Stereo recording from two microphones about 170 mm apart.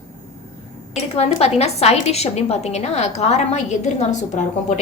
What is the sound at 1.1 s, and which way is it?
A woman's voice, 40° left (ahead or behind).